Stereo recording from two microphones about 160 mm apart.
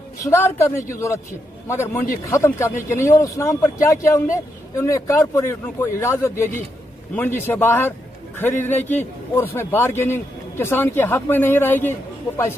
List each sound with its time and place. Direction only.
0.2 s a man's voice: 20° left (ahead or behind)